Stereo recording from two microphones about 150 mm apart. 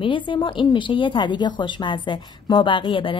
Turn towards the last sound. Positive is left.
turn(degrees=35)  # may be behind; listen again after turning